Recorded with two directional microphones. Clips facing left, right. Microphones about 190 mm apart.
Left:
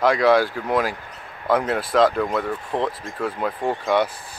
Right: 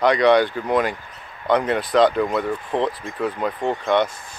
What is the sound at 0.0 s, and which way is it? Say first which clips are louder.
Speech: right 1 dB; 5° left (ahead or behind).